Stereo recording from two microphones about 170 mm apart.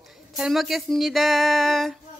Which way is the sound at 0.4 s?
Centre (ahead or behind).